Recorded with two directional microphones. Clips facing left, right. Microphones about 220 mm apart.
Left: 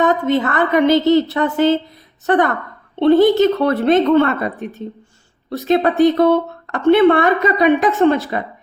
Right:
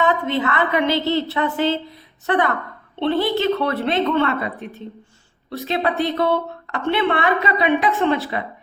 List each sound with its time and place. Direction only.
0.0 s speech: 45° left (ahead or behind)